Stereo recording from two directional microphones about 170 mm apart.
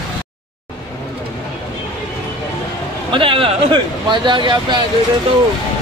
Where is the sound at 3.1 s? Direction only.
30° right (ahead or behind).